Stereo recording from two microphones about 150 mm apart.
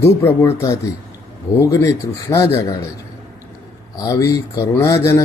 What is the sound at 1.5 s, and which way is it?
Speech, 20° left (ahead or behind).